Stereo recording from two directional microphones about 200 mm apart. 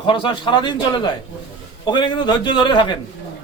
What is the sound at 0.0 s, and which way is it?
A man's voice, 25° left (ahead or behind).